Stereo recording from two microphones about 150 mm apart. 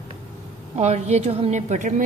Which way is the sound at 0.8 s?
45° right (ahead or behind).